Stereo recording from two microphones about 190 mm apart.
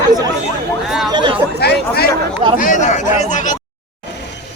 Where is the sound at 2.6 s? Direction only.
40° left (ahead or behind).